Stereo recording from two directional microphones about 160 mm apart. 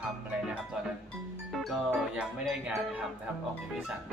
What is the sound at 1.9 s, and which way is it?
Speech, 5° right (ahead or behind).